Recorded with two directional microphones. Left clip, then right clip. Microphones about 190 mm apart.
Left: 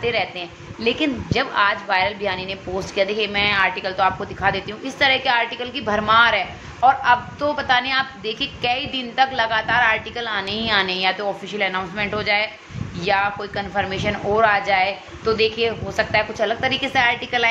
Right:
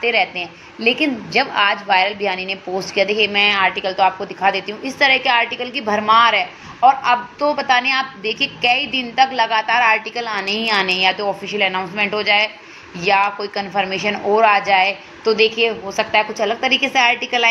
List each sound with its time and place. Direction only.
0.0 s a woman's voice: 10° right (ahead or behind)
8.2 s a woman's voice: 35° left (ahead or behind)
8.6 s a woman's voice: 10° right (ahead or behind)